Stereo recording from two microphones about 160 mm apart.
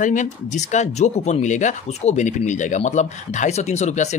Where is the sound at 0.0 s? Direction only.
50° left (ahead or behind).